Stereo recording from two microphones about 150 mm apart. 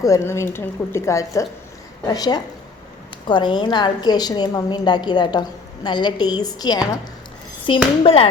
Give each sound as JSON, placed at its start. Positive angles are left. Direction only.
{"t": 0.0, "sound": "a woman's voice", "side_deg": 20}